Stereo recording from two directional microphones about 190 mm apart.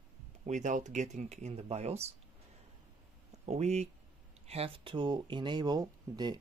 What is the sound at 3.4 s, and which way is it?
Speech, 35° right (ahead or behind).